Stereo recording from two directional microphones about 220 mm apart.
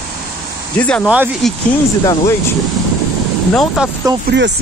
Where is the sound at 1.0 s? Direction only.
5° right (ahead or behind).